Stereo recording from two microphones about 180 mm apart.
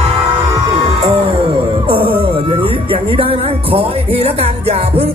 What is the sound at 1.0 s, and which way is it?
Music, 30° right (ahead or behind).